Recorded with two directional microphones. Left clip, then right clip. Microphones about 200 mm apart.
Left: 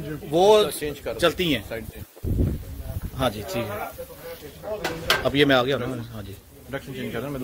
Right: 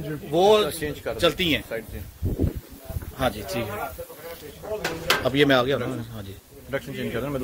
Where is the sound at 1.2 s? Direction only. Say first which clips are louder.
Even; 40° left (ahead or behind).